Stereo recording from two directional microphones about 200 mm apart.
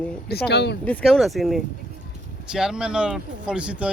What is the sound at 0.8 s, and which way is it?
Speech, 5° left (ahead or behind).